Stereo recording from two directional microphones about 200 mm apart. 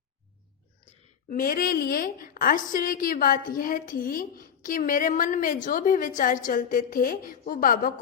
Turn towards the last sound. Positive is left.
turn(degrees=45)  # may be behind; listen again after turning